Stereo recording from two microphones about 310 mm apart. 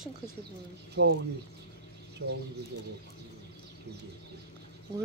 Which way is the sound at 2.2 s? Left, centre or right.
Right.